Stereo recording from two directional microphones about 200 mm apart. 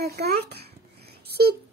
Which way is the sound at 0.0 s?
50° right (ahead or behind).